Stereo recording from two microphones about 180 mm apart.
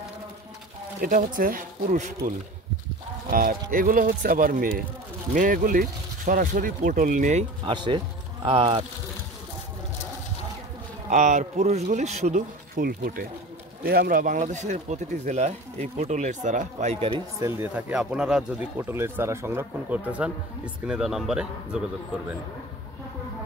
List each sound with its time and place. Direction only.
1.0 s speech: 50° right (ahead or behind)
7.6 s speech: 25° right (ahead or behind)
11.1 s speech: 40° right (ahead or behind)
17.4 s speech: 15° right (ahead or behind)